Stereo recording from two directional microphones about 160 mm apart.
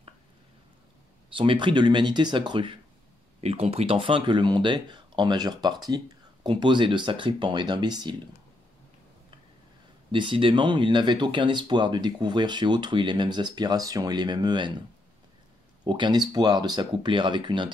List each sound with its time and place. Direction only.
1.3 s speech: 30° right (ahead or behind)
10.1 s speech: 30° right (ahead or behind)
15.8 s speech: 30° right (ahead or behind)